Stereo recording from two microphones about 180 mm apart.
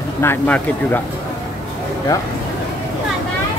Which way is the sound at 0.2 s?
10° left (ahead or behind).